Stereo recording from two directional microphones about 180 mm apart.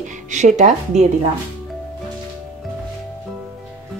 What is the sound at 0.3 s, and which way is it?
Speech, 40° right (ahead or behind).